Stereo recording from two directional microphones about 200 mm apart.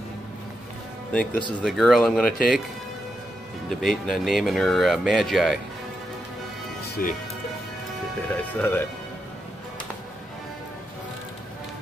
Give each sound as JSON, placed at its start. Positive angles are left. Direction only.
{"t": 1.1, "sound": "speech", "side_deg": 5}
{"t": 3.6, "sound": "speech", "side_deg": 5}
{"t": 7.0, "sound": "speech", "side_deg": 45}
{"t": 8.3, "sound": "speech", "side_deg": 10}